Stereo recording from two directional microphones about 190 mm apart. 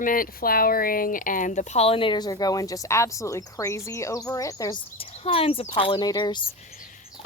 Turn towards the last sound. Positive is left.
turn(degrees=25)  # may be behind; listen again after turning